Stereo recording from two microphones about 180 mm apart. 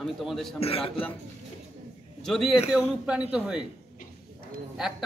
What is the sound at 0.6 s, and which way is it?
Speech, 30° left (ahead or behind).